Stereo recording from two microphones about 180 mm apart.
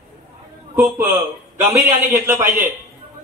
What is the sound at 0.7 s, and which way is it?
A man's voice, 10° right (ahead or behind).